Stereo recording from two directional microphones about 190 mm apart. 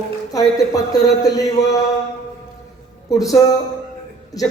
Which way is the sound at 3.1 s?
20° left (ahead or behind).